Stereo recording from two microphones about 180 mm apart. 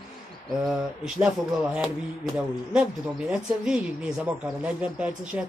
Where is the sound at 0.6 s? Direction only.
Centre (ahead or behind).